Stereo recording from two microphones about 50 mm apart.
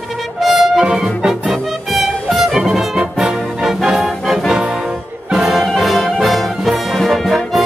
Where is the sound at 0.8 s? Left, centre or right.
Centre.